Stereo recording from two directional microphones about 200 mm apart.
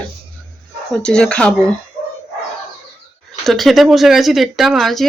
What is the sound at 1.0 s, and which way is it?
Speech, 5° left (ahead or behind).